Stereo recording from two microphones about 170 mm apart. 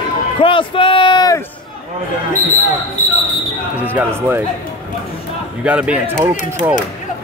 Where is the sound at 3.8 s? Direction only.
10° right (ahead or behind).